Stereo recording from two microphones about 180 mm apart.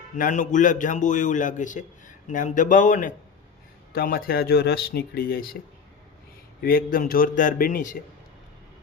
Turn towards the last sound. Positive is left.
turn(degrees=45)  # may be behind; listen again after turning